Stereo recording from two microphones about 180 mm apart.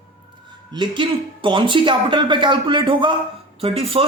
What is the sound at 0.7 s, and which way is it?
Speech, 25° right (ahead or behind).